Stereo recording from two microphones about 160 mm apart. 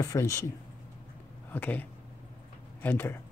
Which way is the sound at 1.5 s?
10° left (ahead or behind).